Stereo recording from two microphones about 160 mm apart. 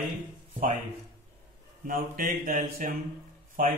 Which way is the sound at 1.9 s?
55° right (ahead or behind).